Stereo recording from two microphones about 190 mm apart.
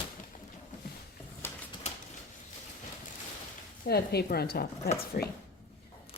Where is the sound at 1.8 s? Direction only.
35° left (ahead or behind).